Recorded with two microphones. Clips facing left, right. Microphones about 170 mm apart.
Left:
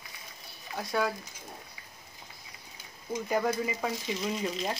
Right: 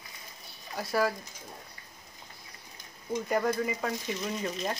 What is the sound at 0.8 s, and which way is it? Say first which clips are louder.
Speech: right 2 dB; centre (ahead or behind).